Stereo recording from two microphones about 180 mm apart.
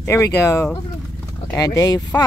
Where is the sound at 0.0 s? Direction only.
15° left (ahead or behind).